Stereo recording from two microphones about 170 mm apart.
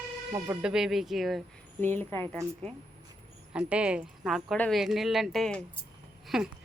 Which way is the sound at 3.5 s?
5° right (ahead or behind).